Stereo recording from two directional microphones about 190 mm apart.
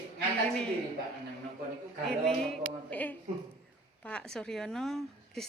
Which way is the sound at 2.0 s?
5° left (ahead or behind).